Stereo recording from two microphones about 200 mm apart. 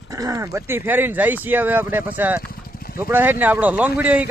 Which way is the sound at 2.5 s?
50° left (ahead or behind).